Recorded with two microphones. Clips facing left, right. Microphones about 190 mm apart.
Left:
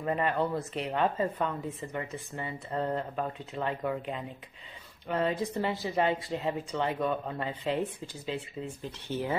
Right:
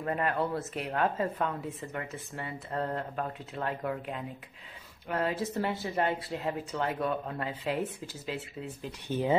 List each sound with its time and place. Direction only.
0.0 s a woman's voice: centre (ahead or behind)
9.0 s speech: 15° right (ahead or behind)